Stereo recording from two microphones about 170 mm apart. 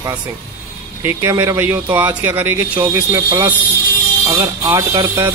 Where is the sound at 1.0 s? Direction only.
15° right (ahead or behind).